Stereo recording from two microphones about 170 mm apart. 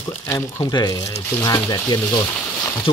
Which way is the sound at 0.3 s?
20° left (ahead or behind).